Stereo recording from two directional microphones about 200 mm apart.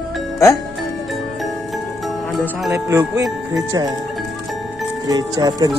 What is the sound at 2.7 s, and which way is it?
Speech, 15° right (ahead or behind).